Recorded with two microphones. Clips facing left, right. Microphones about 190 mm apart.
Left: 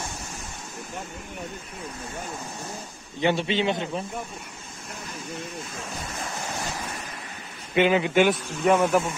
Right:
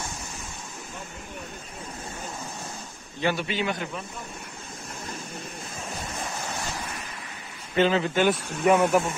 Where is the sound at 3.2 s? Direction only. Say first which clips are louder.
Left 3 dB; 25° left (ahead or behind).